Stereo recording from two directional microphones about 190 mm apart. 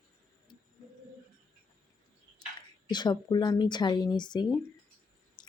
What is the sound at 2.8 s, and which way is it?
Speech, 20° left (ahead or behind).